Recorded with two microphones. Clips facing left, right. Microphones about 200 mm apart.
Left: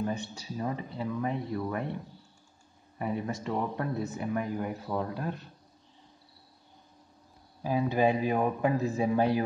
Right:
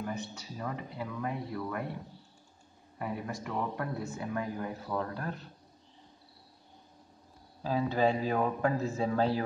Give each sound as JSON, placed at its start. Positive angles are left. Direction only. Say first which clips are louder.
{"t": 0.0, "sound": "speech", "louder": "left 4 dB", "side_deg": 25}
{"t": 3.0, "sound": "speech", "louder": "left 4 dB", "side_deg": 25}
{"t": 7.6, "sound": "a man's voice", "louder": "left 2 dB", "side_deg": 15}